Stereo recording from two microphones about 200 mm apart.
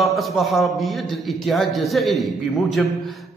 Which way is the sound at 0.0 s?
Centre (ahead or behind).